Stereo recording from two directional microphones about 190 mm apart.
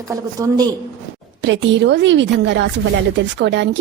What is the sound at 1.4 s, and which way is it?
Speech, 70° right (ahead or behind).